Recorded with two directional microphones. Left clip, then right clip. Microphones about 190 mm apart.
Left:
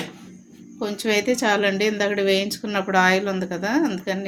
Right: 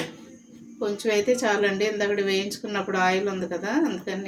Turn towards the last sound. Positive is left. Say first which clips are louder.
# left 3 dB
turn(degrees=45)  # may be behind; listen again after turning